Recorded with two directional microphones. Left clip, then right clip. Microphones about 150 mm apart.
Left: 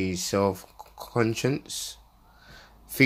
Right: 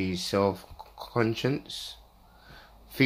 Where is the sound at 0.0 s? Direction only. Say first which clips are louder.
Left 1 dB; 20° left (ahead or behind).